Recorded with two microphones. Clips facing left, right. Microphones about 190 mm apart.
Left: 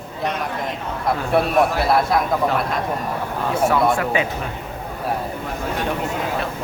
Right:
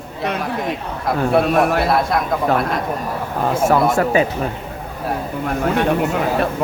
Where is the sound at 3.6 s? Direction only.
45° right (ahead or behind).